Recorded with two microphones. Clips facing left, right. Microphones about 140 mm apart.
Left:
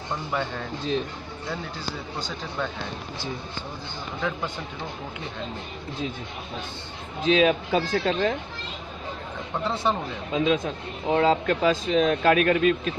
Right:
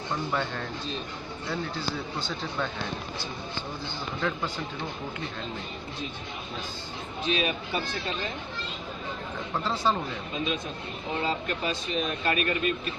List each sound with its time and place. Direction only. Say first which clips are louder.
0.3 s speech: left 4 dB; 5° left (ahead or behind)
7.2 s speech: left 9 dB; 90° left; by 8.4 s 75° left (ahead or behind)
9.8 s speech: left 1 dB; 15° left (ahead or behind)
10.3 s speech: left 10 dB; 90° left